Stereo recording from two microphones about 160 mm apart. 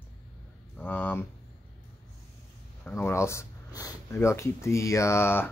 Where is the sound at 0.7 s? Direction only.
10° left (ahead or behind).